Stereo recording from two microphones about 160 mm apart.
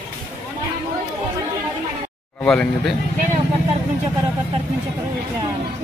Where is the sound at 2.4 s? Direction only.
5° left (ahead or behind).